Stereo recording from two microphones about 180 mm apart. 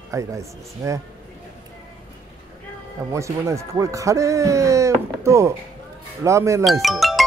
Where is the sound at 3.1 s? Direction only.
15° right (ahead or behind).